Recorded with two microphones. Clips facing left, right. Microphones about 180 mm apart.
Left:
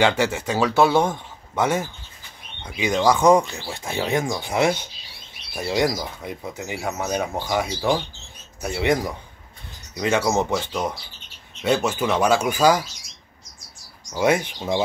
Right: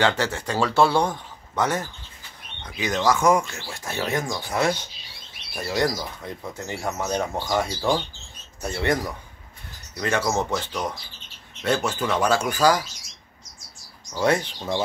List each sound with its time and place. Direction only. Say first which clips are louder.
0.0 s speech: left 3 dB; 10° left (ahead or behind)
0.7 s a man's voice: left 2 dB; 20° left (ahead or behind)
1.6 s speech: left 3 dB; 10° left (ahead or behind)
3.2 s speech: left 5 dB; 35° left (ahead or behind)
3.4 s speech: left 3 dB; 20° left (ahead or behind)
14.1 s speech: left 2 dB; 15° left (ahead or behind)